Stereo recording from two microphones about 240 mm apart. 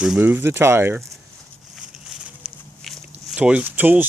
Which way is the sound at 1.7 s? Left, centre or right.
Centre.